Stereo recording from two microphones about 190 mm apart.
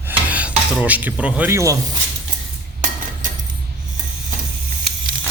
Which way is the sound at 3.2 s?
45° right (ahead or behind).